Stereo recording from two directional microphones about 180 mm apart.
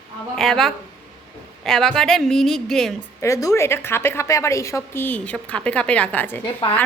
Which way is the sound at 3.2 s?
15° left (ahead or behind).